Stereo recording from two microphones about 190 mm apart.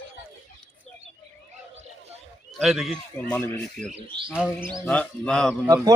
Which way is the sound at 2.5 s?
Centre (ahead or behind).